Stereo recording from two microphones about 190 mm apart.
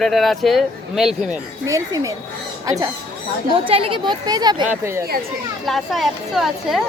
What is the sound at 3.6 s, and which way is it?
Speech, 30° right (ahead or behind).